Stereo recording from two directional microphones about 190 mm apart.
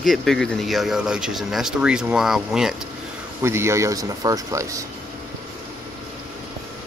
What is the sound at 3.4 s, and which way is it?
A man's voice, 15° right (ahead or behind).